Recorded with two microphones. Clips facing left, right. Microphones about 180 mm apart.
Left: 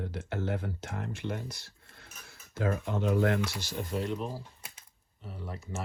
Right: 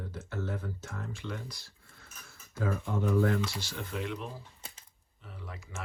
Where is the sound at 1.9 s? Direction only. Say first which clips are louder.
Left 2 dB; 70° left (ahead or behind).